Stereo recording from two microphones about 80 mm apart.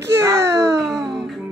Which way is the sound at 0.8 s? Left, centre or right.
Centre.